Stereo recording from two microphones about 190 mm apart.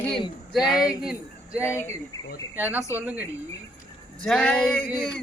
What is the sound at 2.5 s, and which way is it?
Speech, 10° right (ahead or behind).